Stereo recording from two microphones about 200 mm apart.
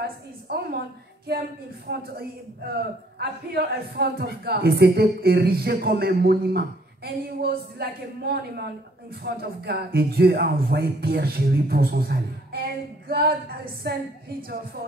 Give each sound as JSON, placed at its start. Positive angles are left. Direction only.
{"t": 0.0, "sound": "a man's voice", "side_deg": -50}
{"t": 1.9, "sound": "a woman's voice", "side_deg": -55}